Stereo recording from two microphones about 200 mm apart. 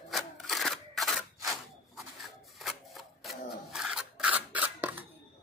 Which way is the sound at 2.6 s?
Centre (ahead or behind).